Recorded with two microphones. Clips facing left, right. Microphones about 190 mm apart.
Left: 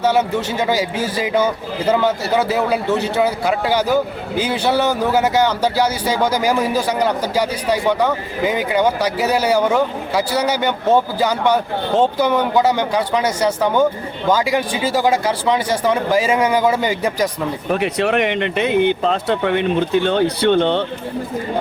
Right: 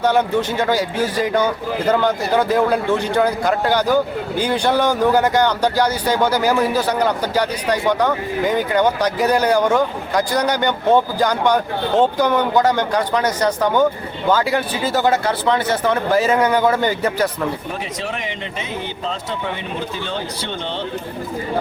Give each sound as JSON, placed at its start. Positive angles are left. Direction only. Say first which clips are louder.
{"t": 0.0, "sound": "a man's voice", "louder": "even", "side_deg": 5}
{"t": 17.7, "sound": "speech", "louder": "left 8 dB", "side_deg": 65}